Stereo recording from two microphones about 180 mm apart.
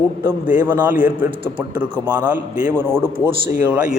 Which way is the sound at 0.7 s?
10° right (ahead or behind).